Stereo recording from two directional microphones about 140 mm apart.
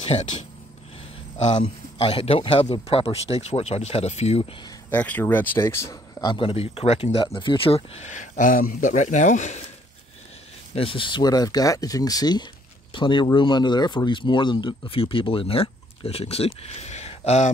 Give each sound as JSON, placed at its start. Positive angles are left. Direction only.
{"t": 0.1, "sound": "speech", "side_deg": 50}
{"t": 1.5, "sound": "speech", "side_deg": 40}
{"t": 4.9, "sound": "speech", "side_deg": 10}
{"t": 6.3, "sound": "speech", "side_deg": 40}
{"t": 10.7, "sound": "speech", "side_deg": 40}